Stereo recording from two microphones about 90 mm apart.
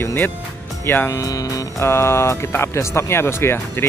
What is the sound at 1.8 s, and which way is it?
Speech, 30° left (ahead or behind).